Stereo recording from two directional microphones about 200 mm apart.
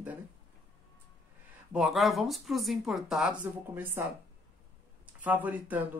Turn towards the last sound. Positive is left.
turn(degrees=-10)  # may be behind; listen again after turning